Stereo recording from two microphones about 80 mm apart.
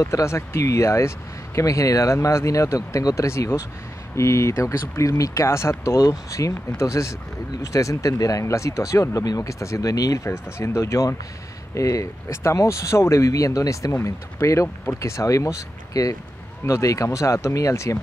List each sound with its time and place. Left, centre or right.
0.0 s speech: left
5.9 s speech: left